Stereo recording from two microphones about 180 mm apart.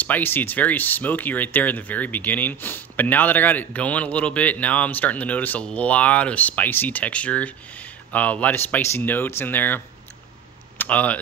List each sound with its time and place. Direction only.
0.0 s speech: 10° left (ahead or behind)
10.8 s speech: 10° left (ahead or behind)